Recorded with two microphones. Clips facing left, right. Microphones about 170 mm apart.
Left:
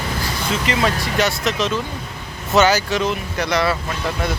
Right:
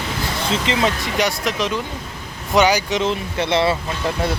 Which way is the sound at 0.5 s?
25° right (ahead or behind).